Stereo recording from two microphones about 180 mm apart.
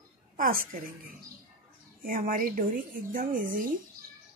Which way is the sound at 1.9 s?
50° right (ahead or behind).